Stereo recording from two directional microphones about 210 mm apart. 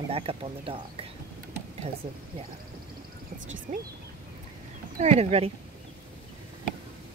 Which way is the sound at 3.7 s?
35° right (ahead or behind).